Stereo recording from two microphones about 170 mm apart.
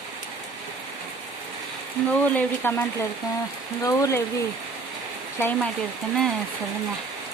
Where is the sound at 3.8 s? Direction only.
20° left (ahead or behind).